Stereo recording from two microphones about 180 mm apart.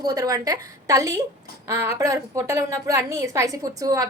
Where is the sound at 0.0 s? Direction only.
20° right (ahead or behind).